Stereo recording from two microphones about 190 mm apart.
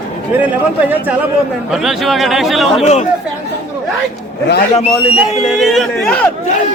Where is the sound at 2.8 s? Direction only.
35° left (ahead or behind).